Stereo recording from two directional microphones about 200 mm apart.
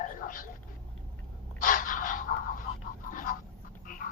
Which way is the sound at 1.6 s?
40° left (ahead or behind).